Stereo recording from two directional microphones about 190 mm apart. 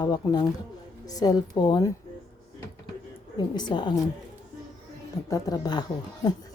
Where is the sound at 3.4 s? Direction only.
25° left (ahead or behind).